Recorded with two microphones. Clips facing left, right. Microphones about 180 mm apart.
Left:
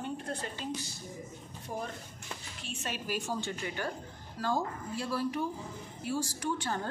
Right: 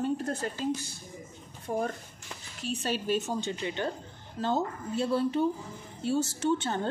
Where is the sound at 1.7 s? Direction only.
55° right (ahead or behind).